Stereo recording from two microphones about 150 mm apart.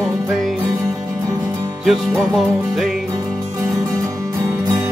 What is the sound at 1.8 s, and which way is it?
Music, centre (ahead or behind).